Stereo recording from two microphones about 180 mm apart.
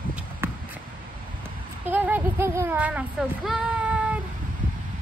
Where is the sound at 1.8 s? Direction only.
10° right (ahead or behind).